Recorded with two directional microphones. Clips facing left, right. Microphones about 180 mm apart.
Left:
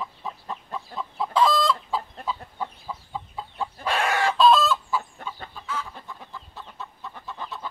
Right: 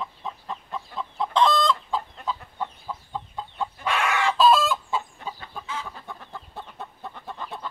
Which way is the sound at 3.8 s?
35° left (ahead or behind).